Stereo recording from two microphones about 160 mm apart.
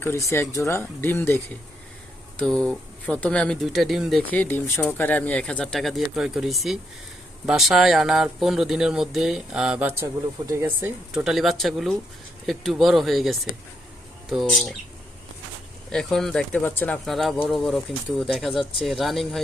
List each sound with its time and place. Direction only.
0.0 s speech: 15° left (ahead or behind)
2.4 s speech: 5° left (ahead or behind)
4.3 s speech: 10° left (ahead or behind); by 10.9 s 15° right (ahead or behind)
11.1 s speech: 5° right (ahead or behind)
15.9 s speech: 5° left (ahead or behind)
17.1 s speech: centre (ahead or behind)